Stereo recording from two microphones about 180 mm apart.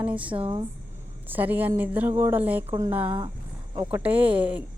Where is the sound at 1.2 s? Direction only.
10° right (ahead or behind).